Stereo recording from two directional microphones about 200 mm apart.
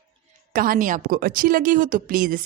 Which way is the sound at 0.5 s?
45° right (ahead or behind).